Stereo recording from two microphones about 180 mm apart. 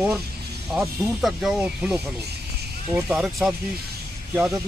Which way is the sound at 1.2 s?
Centre (ahead or behind).